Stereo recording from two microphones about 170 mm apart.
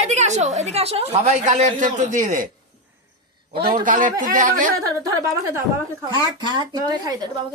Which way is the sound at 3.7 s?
50° right (ahead or behind).